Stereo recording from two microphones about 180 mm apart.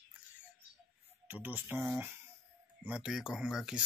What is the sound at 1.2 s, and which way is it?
Speech, 10° right (ahead or behind).